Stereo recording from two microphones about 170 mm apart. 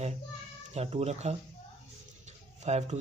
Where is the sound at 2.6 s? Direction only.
40° right (ahead or behind).